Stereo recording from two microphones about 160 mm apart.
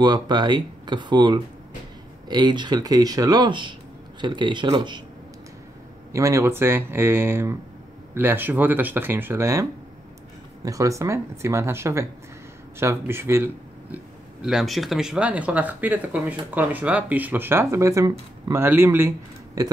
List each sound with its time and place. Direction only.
0.0 s speech: 25° right (ahead or behind)
6.1 s speech: 20° right (ahead or behind)
13.9 s speech: 5° right (ahead or behind); by 19.7 s 20° right (ahead or behind)